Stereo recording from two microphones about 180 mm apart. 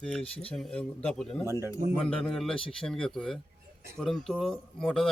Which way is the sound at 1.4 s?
15° right (ahead or behind).